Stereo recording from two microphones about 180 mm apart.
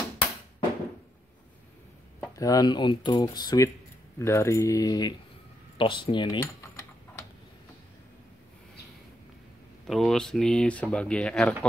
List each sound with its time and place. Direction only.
2.1 s speech: 20° left (ahead or behind)
9.8 s speech: 5° left (ahead or behind)